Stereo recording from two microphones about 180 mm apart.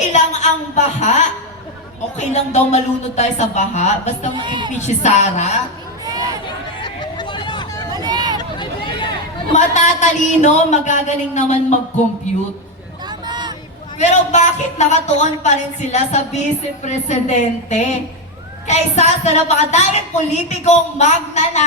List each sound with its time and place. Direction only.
0.1 s a woman's voice: 40° left (ahead or behind)
4.4 s speech: 25° right (ahead or behind)
4.8 s a woman's voice: 40° left (ahead or behind)
6.1 s chatter: 20° right (ahead or behind)
6.8 s a sound: 25° left (ahead or behind)
7.9 s vehicle: 20° right (ahead or behind)
8.4 s hubbub: 25° left (ahead or behind)
9.5 s a woman's voice: 40° left (ahead or behind)
13.1 s a sound: 25° right (ahead or behind)
14.0 s a woman's voice: 40° left (ahead or behind)